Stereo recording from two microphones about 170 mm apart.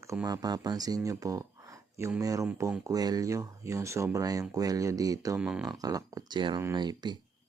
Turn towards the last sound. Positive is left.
turn(degrees=-25)  # may be behind; listen again after turning